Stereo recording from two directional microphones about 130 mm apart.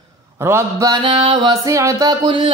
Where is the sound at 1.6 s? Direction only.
25° right (ahead or behind).